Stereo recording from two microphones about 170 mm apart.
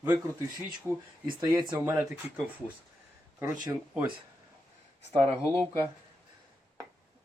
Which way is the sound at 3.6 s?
25° right (ahead or behind).